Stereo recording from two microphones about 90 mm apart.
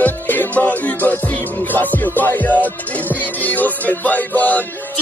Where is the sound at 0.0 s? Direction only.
20° left (ahead or behind).